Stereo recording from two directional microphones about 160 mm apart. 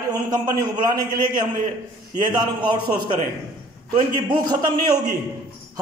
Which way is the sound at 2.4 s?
25° right (ahead or behind).